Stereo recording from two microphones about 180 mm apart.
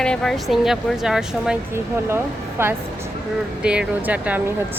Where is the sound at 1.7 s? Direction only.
15° right (ahead or behind).